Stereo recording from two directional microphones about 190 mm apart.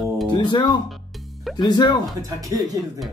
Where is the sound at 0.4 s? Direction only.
25° left (ahead or behind).